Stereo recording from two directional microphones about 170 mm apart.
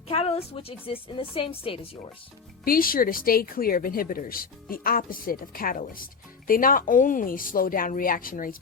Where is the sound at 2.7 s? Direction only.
55° left (ahead or behind).